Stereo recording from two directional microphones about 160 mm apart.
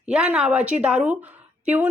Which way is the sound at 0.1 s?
5° right (ahead or behind).